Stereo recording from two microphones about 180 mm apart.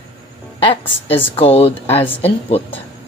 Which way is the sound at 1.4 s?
35° left (ahead or behind).